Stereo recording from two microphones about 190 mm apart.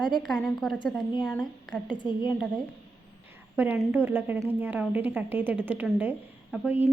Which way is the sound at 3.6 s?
10° right (ahead or behind).